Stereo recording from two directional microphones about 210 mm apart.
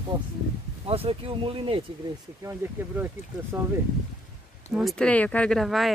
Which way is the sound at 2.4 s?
10° right (ahead or behind).